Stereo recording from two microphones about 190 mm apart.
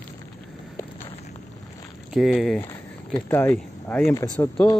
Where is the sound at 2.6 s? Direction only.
10° left (ahead or behind).